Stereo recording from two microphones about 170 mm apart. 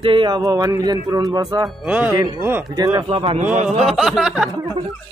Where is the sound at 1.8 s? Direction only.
5° right (ahead or behind).